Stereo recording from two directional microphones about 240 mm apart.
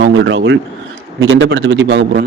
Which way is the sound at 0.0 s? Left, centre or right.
Right.